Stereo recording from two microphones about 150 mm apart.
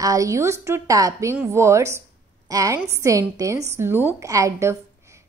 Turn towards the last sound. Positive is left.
turn(degrees=-20)  # may be behind; listen again after turning